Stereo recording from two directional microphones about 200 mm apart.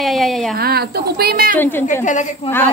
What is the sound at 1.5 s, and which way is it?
Speech, 10° left (ahead or behind).